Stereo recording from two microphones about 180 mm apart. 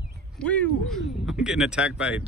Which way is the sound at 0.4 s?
5° left (ahead or behind).